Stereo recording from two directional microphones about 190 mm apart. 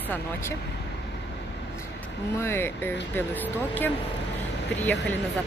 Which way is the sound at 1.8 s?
15° left (ahead or behind).